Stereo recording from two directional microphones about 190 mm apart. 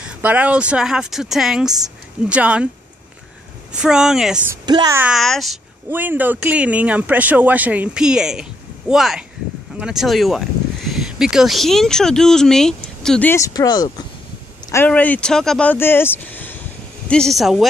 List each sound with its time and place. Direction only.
0.0 s speech: 5° right (ahead or behind)
3.7 s speech: 5° right (ahead or behind)
4.6 s speech: 20° right (ahead or behind)
4.9 s speech: 5° right (ahead or behind); by 14.0 s 20° left (ahead or behind)
14.7 s speech: 10° left (ahead or behind)